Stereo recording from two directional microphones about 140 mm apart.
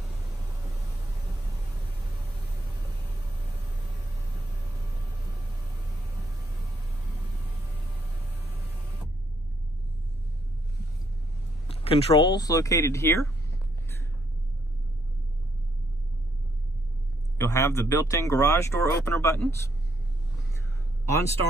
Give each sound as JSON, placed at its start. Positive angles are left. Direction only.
{"t": 11.8, "sound": "speech", "side_deg": 45}
{"t": 17.4, "sound": "speech", "side_deg": 20}